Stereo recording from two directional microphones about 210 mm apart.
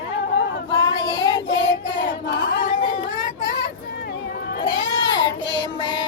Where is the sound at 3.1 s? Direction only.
20° right (ahead or behind).